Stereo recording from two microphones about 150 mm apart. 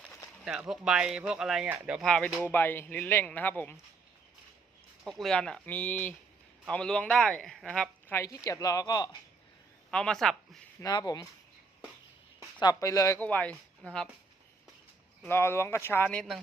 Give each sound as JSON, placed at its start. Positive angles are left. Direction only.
{"t": 0.4, "sound": "speech", "side_deg": -5}
{"t": 2.0, "sound": "speech", "side_deg": 5}
{"t": 5.0, "sound": "speech", "side_deg": 0}
{"t": 8.0, "sound": "speech", "side_deg": 20}
{"t": 9.9, "sound": "speech", "side_deg": 5}
{"t": 10.8, "sound": "speech", "side_deg": 25}
{"t": 12.5, "sound": "speech", "side_deg": 25}
{"t": 13.1, "sound": "speech", "side_deg": 10}
{"t": 15.3, "sound": "speech", "side_deg": 15}